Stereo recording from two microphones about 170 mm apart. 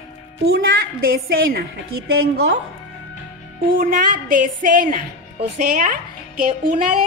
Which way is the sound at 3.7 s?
55° right (ahead or behind).